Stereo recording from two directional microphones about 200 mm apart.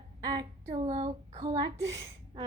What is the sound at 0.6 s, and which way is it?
Speech, 35° right (ahead or behind).